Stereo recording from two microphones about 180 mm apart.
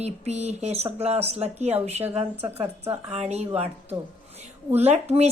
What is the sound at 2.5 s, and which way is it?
Speech, 15° right (ahead or behind).